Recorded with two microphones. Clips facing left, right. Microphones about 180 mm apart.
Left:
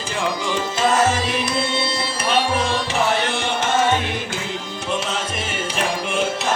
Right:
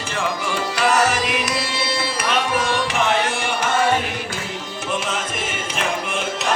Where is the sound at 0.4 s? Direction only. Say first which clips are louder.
Even; 20° left (ahead or behind).